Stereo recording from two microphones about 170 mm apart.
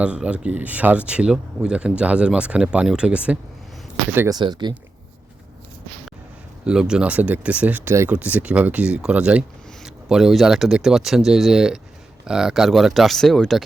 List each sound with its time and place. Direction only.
0.0 s speech: 5° right (ahead or behind)
4.4 s speech: 25° right (ahead or behind)
6.7 s speech: 5° right (ahead or behind)